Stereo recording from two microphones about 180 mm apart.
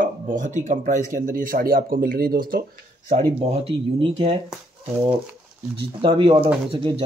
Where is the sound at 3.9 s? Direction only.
30° right (ahead or behind).